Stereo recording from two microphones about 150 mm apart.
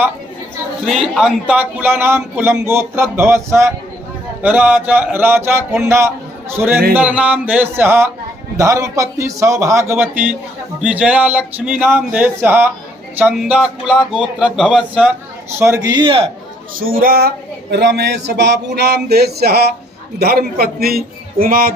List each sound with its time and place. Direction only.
0.9 s a man's voice: centre (ahead or behind)
15.5 s a man's voice: 15° right (ahead or behind); by 16.3 s 35° right (ahead or behind)
16.7 s a man's voice: 75° right (ahead or behind)